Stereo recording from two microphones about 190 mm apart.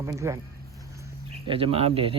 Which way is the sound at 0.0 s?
15° right (ahead or behind).